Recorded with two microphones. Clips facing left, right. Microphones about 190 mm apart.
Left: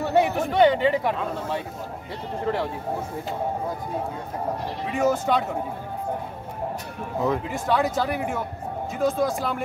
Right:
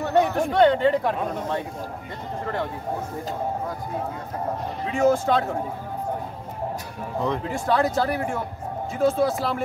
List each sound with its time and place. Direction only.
0.1 s speech: 5° left (ahead or behind)
4.8 s speech: 5° left (ahead or behind)
7.2 s speech: 5° left (ahead or behind)